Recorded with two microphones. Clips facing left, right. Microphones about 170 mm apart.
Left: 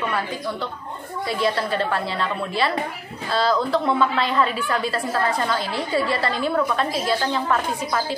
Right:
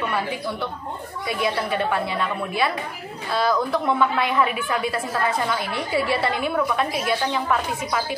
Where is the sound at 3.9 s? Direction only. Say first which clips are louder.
Even; 10° right (ahead or behind).